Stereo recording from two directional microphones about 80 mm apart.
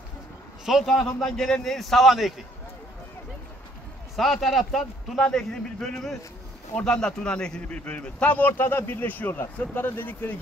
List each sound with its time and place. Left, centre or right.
0.7 s a man's voice: centre
4.2 s a man's voice: centre; by 10.3 s left